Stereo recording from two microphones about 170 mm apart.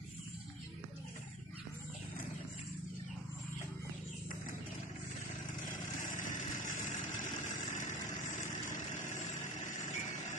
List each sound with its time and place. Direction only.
5.7 s vehicle: 50° left (ahead or behind)